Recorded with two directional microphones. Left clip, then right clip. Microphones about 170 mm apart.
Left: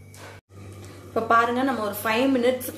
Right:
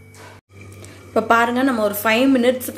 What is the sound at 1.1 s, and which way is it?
A woman's voice, 40° right (ahead or behind).